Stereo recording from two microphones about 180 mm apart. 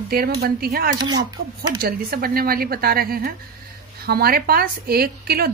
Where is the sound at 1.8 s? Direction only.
55° right (ahead or behind).